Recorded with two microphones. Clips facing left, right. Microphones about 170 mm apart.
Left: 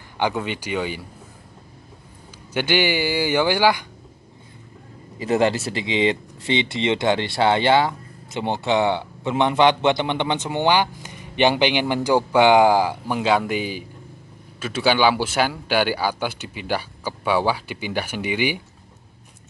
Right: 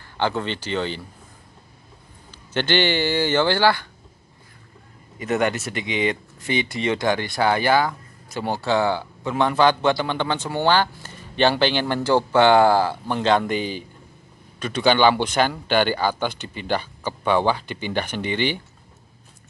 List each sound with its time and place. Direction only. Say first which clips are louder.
0.2 s a man's voice: even; 10° left (ahead or behind)
2.5 s a man's voice: even; 10° left (ahead or behind)
5.2 s a man's voice: left 3 dB; 30° left (ahead or behind); by 18.6 s 10° left (ahead or behind)